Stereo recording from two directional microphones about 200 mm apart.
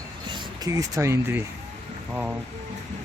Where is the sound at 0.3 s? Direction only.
15° right (ahead or behind).